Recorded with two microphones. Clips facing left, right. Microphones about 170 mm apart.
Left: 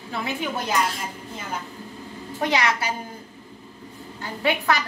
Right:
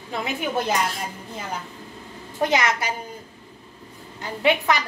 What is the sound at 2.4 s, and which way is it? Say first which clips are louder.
Speech: right 1 dB; 20° right (ahead or behind).